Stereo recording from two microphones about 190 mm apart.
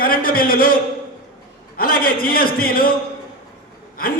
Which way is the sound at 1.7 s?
50° left (ahead or behind).